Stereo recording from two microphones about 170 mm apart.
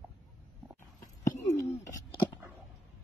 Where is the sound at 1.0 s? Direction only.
20° left (ahead or behind).